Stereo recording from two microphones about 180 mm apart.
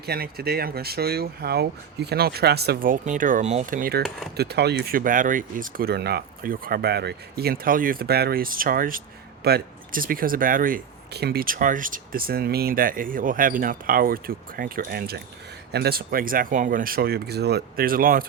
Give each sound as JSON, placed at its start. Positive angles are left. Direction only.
{"t": 0.0, "sound": "speech", "side_deg": -60}
{"t": 4.4, "sound": "speech", "side_deg": -65}
{"t": 9.4, "sound": "speech", "side_deg": -60}